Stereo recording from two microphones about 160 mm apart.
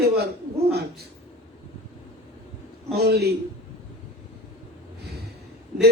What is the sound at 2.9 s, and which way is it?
Speech, 90° right.